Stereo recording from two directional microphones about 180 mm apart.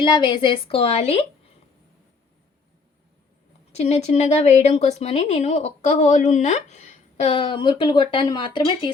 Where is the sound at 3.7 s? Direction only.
40° left (ahead or behind).